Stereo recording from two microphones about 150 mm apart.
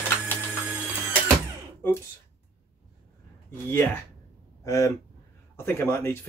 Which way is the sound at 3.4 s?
15° left (ahead or behind).